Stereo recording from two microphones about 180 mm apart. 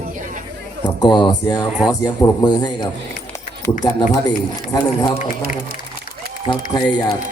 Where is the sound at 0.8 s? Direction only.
25° left (ahead or behind).